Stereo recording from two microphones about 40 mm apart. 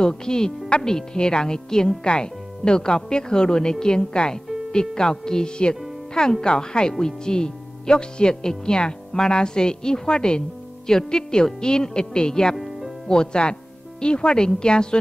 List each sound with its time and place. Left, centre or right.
0.0 s speech: centre
12.5 s music: centre
13.1 s speech: left